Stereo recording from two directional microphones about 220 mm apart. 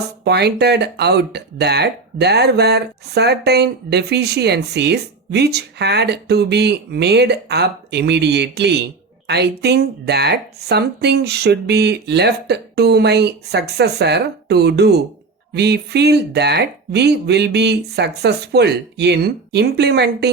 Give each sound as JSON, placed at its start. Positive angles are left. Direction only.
{"t": 0.3, "sound": "speech", "side_deg": -50}